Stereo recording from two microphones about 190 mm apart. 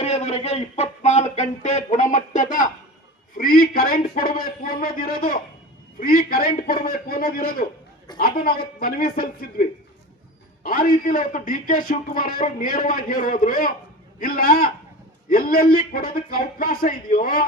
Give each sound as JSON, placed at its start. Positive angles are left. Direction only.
{"t": 0.0, "sound": "a man's voice", "side_deg": 35}